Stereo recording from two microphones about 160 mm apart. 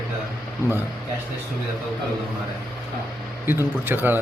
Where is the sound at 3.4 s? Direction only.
15° right (ahead or behind).